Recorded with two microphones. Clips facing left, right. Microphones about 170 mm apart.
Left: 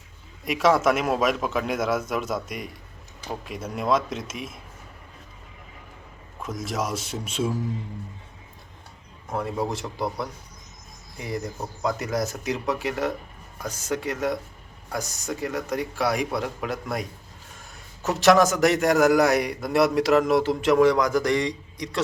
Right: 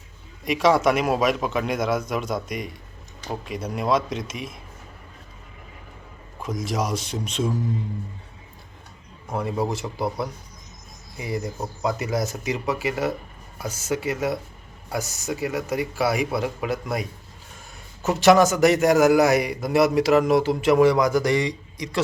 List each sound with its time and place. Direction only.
0.4 s a man's voice: centre (ahead or behind)
6.4 s a man's voice: centre (ahead or behind)
9.3 s a man's voice: centre (ahead or behind)